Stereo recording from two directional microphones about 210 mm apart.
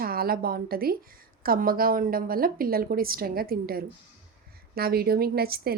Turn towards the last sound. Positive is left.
turn(degrees=-45)  # may be behind; listen again after turning